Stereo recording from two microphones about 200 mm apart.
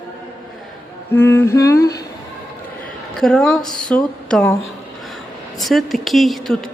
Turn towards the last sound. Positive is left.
turn(degrees=0)  # may be behind; listen again after turning